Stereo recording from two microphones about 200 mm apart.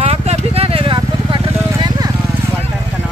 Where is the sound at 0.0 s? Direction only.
30° right (ahead or behind).